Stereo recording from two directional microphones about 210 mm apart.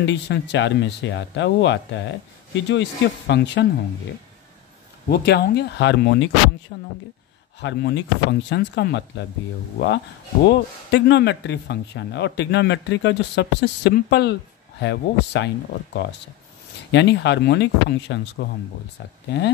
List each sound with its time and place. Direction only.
0.0 s speech: 55° left (ahead or behind)
5.1 s speech: 50° left (ahead or behind)
10.4 s speech: 55° left (ahead or behind)